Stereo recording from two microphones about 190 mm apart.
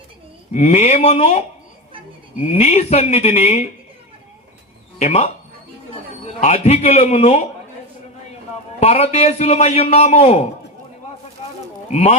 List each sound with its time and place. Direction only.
0.5 s a man's voice: 35° left (ahead or behind)
4.9 s a man's voice: 35° left (ahead or behind)
8.8 s a man's voice: 35° left (ahead or behind)
11.9 s a man's voice: 35° left (ahead or behind)